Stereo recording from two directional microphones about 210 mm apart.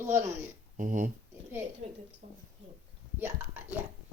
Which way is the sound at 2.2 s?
30° right (ahead or behind).